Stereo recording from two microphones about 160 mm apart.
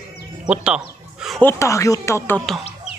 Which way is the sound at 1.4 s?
20° left (ahead or behind).